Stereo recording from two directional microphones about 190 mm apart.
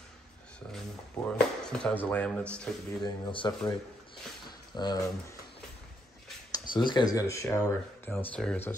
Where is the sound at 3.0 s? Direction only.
25° left (ahead or behind).